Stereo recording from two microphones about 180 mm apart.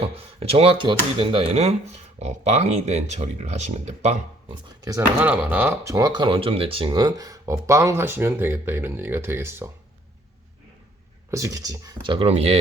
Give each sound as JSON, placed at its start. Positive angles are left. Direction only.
{"t": 0.0, "sound": "speech", "side_deg": -35}
{"t": 4.8, "sound": "speech", "side_deg": -20}
{"t": 11.3, "sound": "speech", "side_deg": -15}